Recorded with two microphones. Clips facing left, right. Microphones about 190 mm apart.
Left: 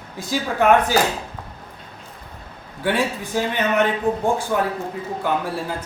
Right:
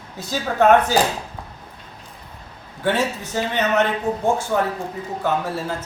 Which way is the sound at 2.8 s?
15° left (ahead or behind).